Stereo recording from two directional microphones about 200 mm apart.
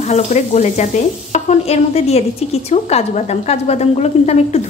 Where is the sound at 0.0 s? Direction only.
35° left (ahead or behind).